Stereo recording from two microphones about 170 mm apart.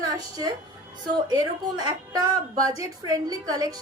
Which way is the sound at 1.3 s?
20° right (ahead or behind).